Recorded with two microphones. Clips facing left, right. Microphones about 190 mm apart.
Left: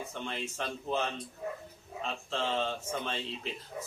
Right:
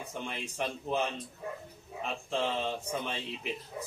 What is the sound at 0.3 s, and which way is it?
Speech, 15° right (ahead or behind).